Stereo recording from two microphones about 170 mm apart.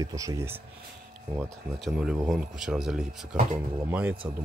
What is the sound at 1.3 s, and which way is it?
Speech, centre (ahead or behind).